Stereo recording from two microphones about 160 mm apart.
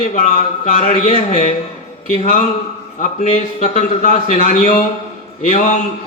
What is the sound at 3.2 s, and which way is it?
Speech, 55° left (ahead or behind).